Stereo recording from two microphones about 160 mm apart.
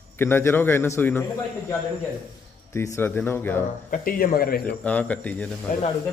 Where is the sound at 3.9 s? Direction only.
65° left (ahead or behind).